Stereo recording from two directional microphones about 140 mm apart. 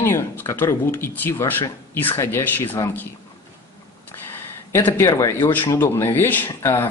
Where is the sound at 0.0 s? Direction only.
15° left (ahead or behind).